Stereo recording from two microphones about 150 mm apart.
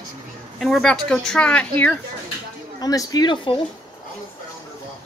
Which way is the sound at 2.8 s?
25° left (ahead or behind).